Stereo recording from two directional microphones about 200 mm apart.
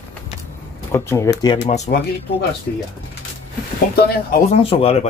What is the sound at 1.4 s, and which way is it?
Speech, 35° left (ahead or behind).